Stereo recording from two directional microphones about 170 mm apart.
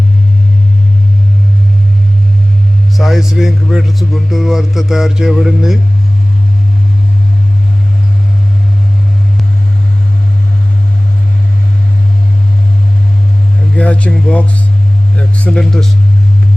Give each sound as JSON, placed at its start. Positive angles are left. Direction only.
{"t": 3.0, "sound": "a man's voice", "side_deg": 0}
{"t": 13.7, "sound": "a man's voice", "side_deg": 10}